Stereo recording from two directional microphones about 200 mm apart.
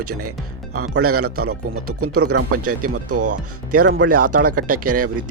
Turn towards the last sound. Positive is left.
turn(degrees=-45)  # may be behind; listen again after turning